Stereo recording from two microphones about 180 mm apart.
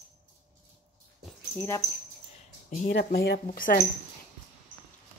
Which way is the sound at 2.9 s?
65° left (ahead or behind).